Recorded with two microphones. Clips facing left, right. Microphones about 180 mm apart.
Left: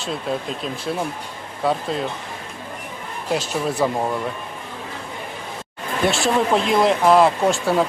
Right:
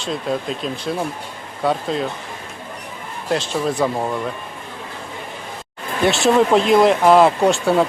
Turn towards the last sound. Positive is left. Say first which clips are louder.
# right 3 dB
turn(degrees=0)  # may be behind; listen again after turning